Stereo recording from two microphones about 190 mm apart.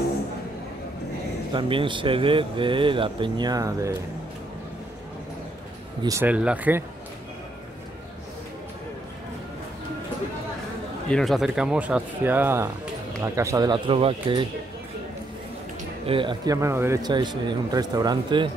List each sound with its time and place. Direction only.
1.5 s speech: 25° right (ahead or behind)
6.0 s speech: 10° right (ahead or behind)
11.1 s speech: centre (ahead or behind); by 14.5 s 25° right (ahead or behind)
16.1 s speech: 25° right (ahead or behind)